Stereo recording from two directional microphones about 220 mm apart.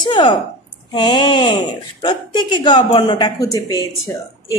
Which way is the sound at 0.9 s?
20° left (ahead or behind).